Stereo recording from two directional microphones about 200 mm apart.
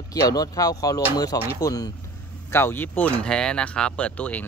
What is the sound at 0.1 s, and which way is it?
Speech, 20° left (ahead or behind).